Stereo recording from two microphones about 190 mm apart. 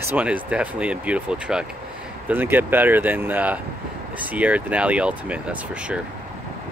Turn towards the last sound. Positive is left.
turn(degrees=-5)  # may be behind; listen again after turning